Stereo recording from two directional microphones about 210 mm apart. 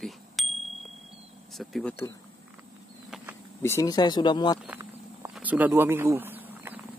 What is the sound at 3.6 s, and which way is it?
Speech, 15° left (ahead or behind).